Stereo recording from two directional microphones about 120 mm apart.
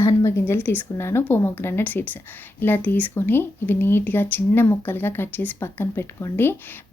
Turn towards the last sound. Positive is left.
turn(degrees=20)  # may be behind; listen again after turning